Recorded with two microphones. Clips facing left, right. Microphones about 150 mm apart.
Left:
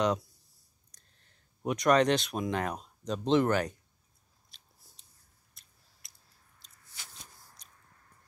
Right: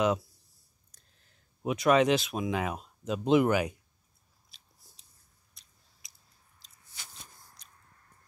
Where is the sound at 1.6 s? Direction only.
5° right (ahead or behind).